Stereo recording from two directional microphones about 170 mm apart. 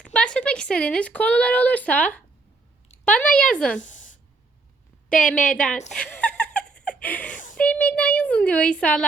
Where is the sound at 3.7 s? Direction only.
50° left (ahead or behind).